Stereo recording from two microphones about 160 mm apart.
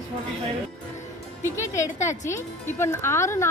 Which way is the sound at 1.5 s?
20° left (ahead or behind).